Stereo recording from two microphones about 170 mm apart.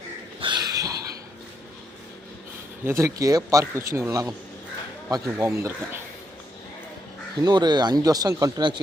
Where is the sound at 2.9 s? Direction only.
15° right (ahead or behind).